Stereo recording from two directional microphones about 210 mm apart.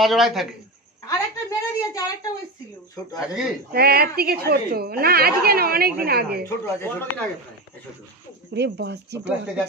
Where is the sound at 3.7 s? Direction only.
45° right (ahead or behind).